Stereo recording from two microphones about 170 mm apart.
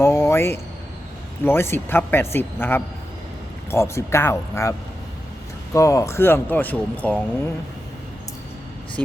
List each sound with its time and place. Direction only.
0.0 s a sound: 15° left (ahead or behind)
1.5 s speech: 15° left (ahead or behind)
5.7 s speech: 20° left (ahead or behind)
9.0 s speech: 5° left (ahead or behind)